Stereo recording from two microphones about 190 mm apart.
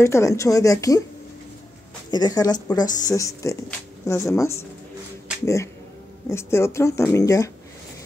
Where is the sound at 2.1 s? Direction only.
20° left (ahead or behind).